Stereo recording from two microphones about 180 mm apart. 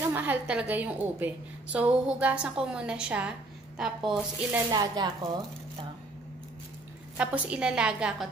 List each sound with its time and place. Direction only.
0.1 s a woman's voice: 10° right (ahead or behind)
4.6 s speech: 20° right (ahead or behind)
7.2 s a woman's voice: 5° right (ahead or behind)